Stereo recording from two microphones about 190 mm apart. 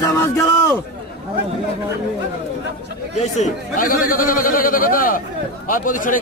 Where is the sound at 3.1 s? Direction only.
40° left (ahead or behind).